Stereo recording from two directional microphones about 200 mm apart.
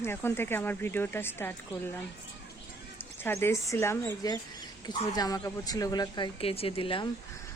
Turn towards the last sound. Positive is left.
turn(degrees=25)  # may be behind; listen again after turning